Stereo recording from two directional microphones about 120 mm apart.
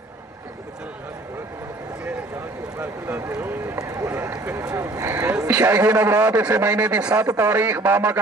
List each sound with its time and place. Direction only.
2.8 s boat: 15° right (ahead or behind)
3.7 s run: 25° right (ahead or behind)
4.4 s a sound: 25° right (ahead or behind)
5.5 s a man's voice: 15° right (ahead or behind)